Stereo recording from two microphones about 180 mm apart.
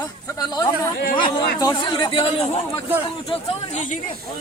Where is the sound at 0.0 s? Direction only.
20° left (ahead or behind); by 4.2 s 40° left (ahead or behind).